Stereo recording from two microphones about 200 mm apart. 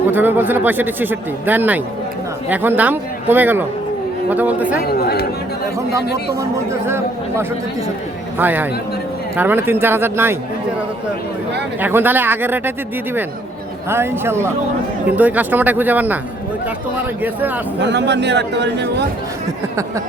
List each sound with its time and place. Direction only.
0.1 s speech: 10° right (ahead or behind)
4.9 s speech: 50° left (ahead or behind)
6.7 s speech: 15° right (ahead or behind)
11.8 s speech: 10° right (ahead or behind)
13.9 s speech: 10° right (ahead or behind)
17.2 s speech: 10° right (ahead or behind)
17.7 s speech: 60° right (ahead or behind)